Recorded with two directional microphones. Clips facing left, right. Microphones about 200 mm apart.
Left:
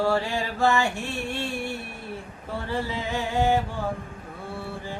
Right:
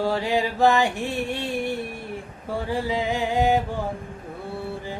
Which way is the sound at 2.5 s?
15° right (ahead or behind).